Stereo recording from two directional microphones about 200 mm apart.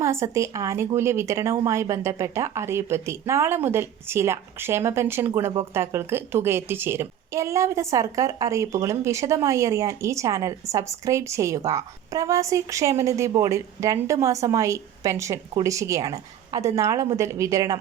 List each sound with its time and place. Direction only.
0.0 s a woman's voice: 15° right (ahead or behind)